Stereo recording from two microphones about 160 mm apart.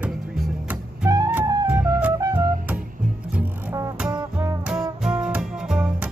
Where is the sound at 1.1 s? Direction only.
20° right (ahead or behind).